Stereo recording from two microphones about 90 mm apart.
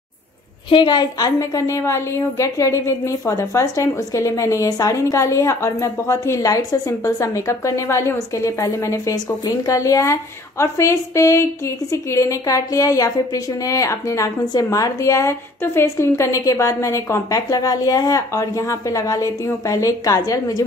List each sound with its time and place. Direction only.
0.7 s a woman's voice: 60° left (ahead or behind); by 14.3 s 35° left (ahead or behind)
14.4 s a woman's voice: 45° left (ahead or behind)